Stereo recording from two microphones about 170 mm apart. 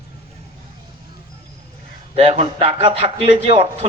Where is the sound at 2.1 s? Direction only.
35° right (ahead or behind).